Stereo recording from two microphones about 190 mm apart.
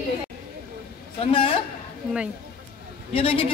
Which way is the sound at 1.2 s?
30° left (ahead or behind).